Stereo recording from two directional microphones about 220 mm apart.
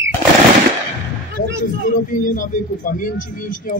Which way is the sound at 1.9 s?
35° left (ahead or behind).